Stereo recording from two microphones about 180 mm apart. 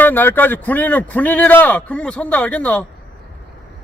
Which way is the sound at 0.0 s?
10° left (ahead or behind).